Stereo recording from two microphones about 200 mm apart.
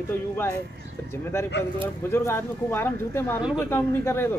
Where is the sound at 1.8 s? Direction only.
10° left (ahead or behind).